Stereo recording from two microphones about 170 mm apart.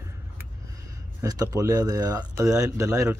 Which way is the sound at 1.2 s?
20° right (ahead or behind).